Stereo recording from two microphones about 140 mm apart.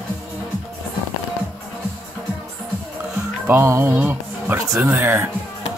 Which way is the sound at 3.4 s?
20° right (ahead or behind).